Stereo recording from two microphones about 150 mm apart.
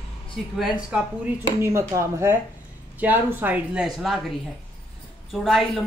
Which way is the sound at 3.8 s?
Centre (ahead or behind).